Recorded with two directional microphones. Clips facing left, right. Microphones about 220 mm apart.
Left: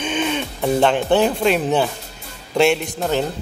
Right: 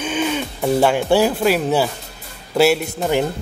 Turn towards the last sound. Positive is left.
turn(degrees=-10)  # may be behind; listen again after turning